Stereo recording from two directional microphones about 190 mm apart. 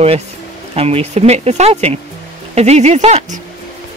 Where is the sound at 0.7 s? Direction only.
35° right (ahead or behind).